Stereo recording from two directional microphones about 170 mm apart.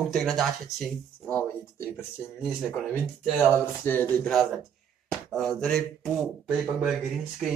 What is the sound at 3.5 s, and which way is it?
Speech, 10° left (ahead or behind).